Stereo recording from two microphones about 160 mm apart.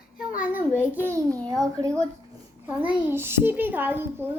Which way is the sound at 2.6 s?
10° right (ahead or behind).